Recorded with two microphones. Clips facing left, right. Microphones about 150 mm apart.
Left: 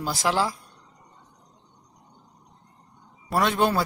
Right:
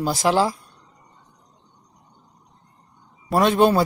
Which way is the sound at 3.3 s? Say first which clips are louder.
Right 6 dB; 20° right (ahead or behind).